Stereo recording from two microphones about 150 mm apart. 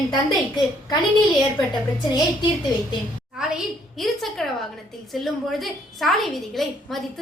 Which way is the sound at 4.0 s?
Centre (ahead or behind).